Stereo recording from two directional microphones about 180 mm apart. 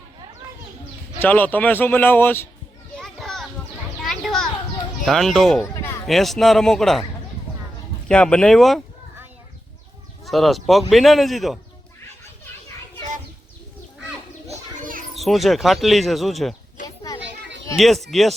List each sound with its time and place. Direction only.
1.2 s speech: 10° left (ahead or behind)
3.0 s children playing: centre (ahead or behind)
4.0 s a sound: centre (ahead or behind)
5.0 s speech: centre (ahead or behind)
8.0 s speech: 5° left (ahead or behind)
10.2 s speech: centre (ahead or behind)
14.4 s children playing: 50° right (ahead or behind)
15.1 s speech: centre (ahead or behind)
17.2 s children playing: 80° right
17.7 s speech: centre (ahead or behind)